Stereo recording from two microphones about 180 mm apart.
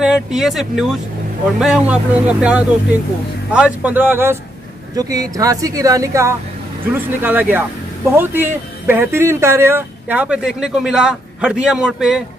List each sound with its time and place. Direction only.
0.0 s a woman's voice: 5° right (ahead or behind)